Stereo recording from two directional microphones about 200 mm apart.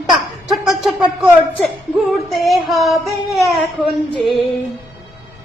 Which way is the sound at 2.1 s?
Centre (ahead or behind).